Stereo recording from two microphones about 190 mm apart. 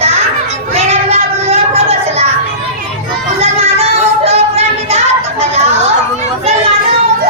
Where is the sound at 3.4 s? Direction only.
30° right (ahead or behind).